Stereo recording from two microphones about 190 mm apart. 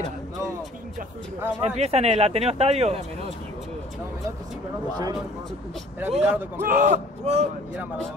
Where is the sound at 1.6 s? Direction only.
35° right (ahead or behind).